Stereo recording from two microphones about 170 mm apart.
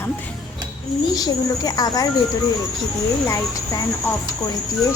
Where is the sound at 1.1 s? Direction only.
25° left (ahead or behind).